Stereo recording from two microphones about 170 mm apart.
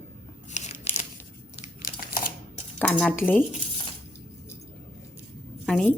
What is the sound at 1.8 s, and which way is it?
Crumpling, 55° left (ahead or behind).